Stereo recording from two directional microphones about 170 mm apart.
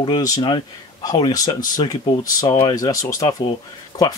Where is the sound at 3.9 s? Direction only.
20° left (ahead or behind).